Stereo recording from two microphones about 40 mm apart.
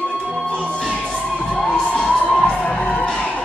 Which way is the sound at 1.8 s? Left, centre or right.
Left.